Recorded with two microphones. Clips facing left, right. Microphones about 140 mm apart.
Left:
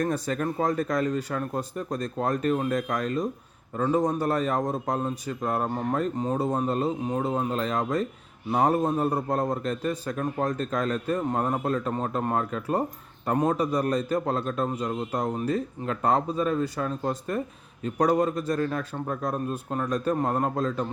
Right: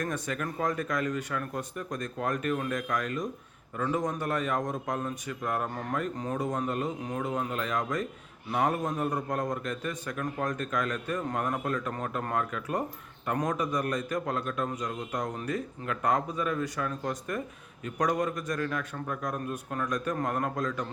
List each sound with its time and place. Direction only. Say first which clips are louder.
0.0 s a man's voice: left 6 dB; 35° left (ahead or behind)